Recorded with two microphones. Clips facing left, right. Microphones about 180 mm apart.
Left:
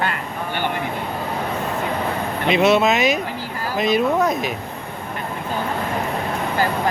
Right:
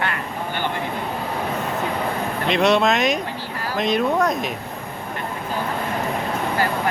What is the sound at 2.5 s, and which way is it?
Speech, 5° left (ahead or behind).